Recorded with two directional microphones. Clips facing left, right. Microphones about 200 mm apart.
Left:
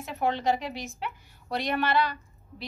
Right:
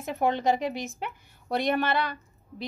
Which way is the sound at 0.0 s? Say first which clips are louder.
Right 2 dB; 45° right (ahead or behind).